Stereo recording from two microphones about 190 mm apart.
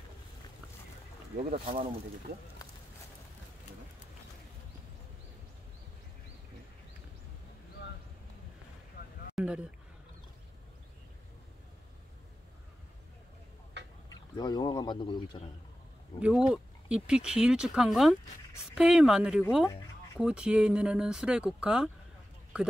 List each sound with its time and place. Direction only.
1.5 s speech: 30° right (ahead or behind)
9.0 s vehicle: 55° left (ahead or behind)
9.3 s speech: 5° right (ahead or behind)
14.0 s speech: 20° left (ahead or behind)
16.2 s speech: 5° right (ahead or behind)